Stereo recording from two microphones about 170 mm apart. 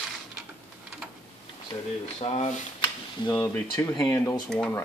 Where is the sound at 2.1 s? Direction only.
35° left (ahead or behind).